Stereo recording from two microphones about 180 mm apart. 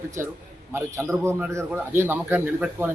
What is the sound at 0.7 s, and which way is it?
Speech, 15° right (ahead or behind).